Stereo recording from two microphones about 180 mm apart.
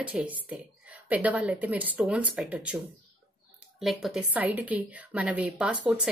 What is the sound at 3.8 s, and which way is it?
Speech, centre (ahead or behind).